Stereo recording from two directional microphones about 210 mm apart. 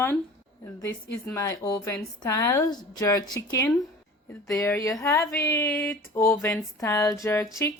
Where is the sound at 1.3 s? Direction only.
15° left (ahead or behind).